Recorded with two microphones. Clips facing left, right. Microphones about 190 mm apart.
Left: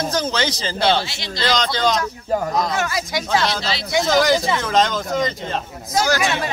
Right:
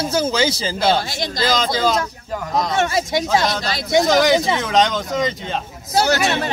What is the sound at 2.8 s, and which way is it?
Speech, 25° right (ahead or behind).